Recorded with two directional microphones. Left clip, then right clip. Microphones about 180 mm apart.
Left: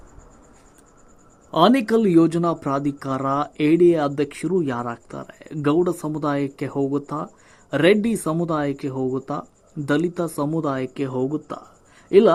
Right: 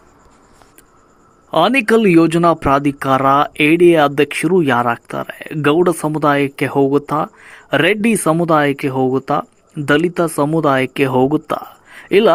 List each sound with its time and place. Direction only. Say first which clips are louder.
1.5 s speech: right 5 dB; 15° right (ahead or behind)